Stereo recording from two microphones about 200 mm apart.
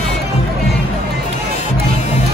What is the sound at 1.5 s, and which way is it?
Music, 35° left (ahead or behind).